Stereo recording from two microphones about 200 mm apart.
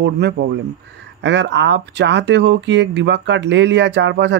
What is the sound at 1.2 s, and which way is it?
Speech, 60° right (ahead or behind).